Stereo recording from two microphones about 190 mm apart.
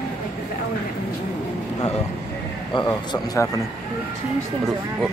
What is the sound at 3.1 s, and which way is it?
Speech, 20° left (ahead or behind).